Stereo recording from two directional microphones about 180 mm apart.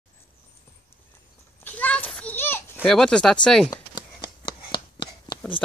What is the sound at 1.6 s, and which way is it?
Children playing, 10° left (ahead or behind).